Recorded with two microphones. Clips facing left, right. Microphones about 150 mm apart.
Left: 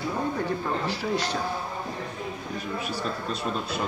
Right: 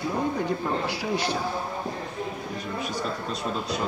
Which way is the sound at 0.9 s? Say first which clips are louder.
Even; 10° right (ahead or behind).